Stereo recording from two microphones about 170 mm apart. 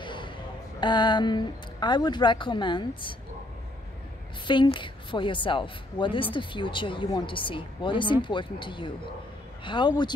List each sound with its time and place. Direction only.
0.0 s a sound: 30° left (ahead or behind)
0.7 s speech: 25° left (ahead or behind)
4.5 s speech: 30° left (ahead or behind)